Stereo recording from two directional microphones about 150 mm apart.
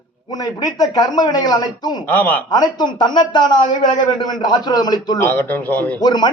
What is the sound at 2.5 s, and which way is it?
A man's voice, 30° left (ahead or behind).